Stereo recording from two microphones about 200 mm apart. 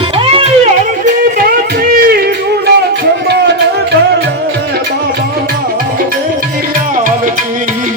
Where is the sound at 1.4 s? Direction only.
45° right (ahead or behind).